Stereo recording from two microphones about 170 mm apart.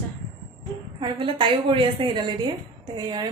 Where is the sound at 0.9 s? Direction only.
30° right (ahead or behind).